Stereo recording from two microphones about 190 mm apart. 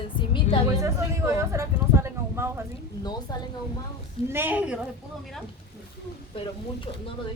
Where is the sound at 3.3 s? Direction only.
20° left (ahead or behind).